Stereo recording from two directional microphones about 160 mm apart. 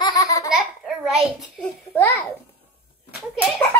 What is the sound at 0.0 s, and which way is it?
Laughter, 20° left (ahead or behind).